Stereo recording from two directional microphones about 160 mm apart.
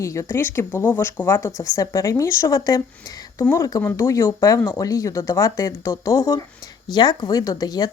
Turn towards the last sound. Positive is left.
turn(degrees=25)  # may be behind; listen again after turning